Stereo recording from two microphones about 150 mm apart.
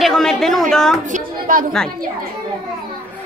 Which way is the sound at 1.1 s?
65° right (ahead or behind).